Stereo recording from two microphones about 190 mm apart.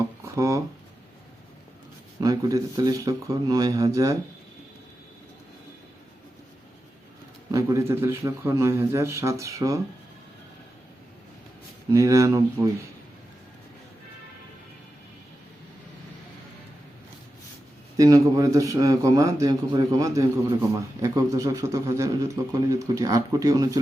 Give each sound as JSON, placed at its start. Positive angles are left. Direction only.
{"t": 0.3, "sound": "a man's voice", "side_deg": -15}
{"t": 2.2, "sound": "speech", "side_deg": -20}
{"t": 7.5, "sound": "a man's voice", "side_deg": -15}
{"t": 11.9, "sound": "a man's voice", "side_deg": -15}
{"t": 17.9, "sound": "a man's voice", "side_deg": -20}